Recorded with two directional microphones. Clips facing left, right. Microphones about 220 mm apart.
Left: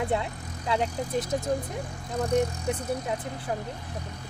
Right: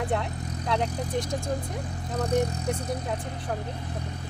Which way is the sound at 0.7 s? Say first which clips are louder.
Left 1 dB; 5° left (ahead or behind).